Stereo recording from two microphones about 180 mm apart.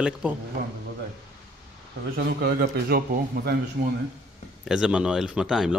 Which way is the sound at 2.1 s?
55° right (ahead or behind).